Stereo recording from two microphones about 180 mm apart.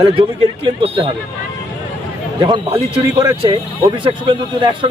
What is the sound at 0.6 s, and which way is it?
Speech, 30° right (ahead or behind).